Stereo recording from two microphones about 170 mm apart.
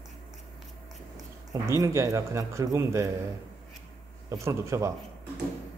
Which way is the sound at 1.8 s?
20° right (ahead or behind).